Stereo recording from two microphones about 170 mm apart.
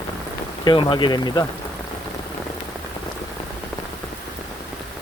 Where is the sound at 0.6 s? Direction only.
30° left (ahead or behind).